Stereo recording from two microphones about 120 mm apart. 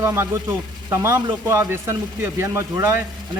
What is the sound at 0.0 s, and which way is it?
Speech, 20° right (ahead or behind).